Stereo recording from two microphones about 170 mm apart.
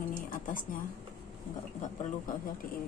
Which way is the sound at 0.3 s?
50° left (ahead or behind).